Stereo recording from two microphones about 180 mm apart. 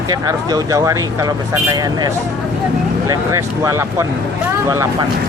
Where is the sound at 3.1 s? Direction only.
15° right (ahead or behind).